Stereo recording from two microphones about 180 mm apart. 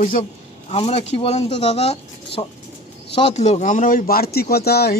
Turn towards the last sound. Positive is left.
turn(degrees=60)  # may be behind; listen again after turning